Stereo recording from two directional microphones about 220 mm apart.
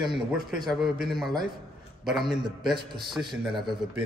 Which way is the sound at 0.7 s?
Centre (ahead or behind).